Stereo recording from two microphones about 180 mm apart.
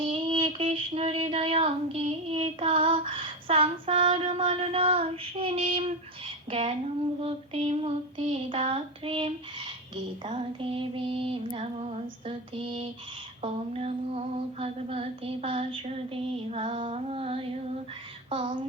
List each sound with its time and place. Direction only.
0.1 s child singing: 30° right (ahead or behind)
6.5 s female singing: 30° right (ahead or behind)
18.3 s speech: 30° right (ahead or behind)